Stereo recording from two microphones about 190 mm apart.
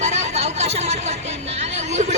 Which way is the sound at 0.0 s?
35° right (ahead or behind).